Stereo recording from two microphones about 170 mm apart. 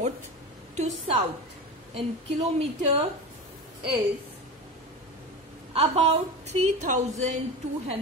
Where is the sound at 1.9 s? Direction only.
35° right (ahead or behind).